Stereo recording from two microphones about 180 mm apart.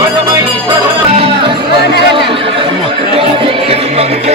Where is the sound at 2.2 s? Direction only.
30° right (ahead or behind).